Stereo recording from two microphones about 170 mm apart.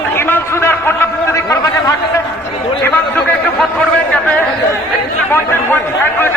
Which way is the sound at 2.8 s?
10° left (ahead or behind).